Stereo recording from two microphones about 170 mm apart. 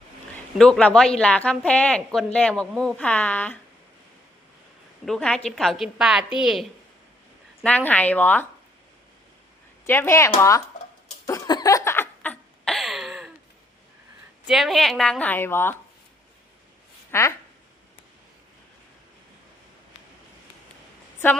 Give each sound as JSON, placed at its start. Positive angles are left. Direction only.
{"t": 0.6, "sound": "speech", "side_deg": 5}
{"t": 5.0, "sound": "a woman's voice", "side_deg": 5}
{"t": 7.9, "sound": "speech", "side_deg": 10}
{"t": 9.8, "sound": "speech", "side_deg": 15}
{"t": 11.3, "sound": "a sound", "side_deg": 20}
{"t": 14.4, "sound": "a woman's voice", "side_deg": 0}
{"t": 17.1, "sound": "speech", "side_deg": 15}